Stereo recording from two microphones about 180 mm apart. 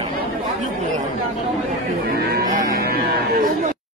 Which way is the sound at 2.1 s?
50° right (ahead or behind).